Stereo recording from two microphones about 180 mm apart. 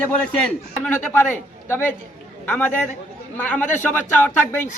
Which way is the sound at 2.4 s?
10° left (ahead or behind).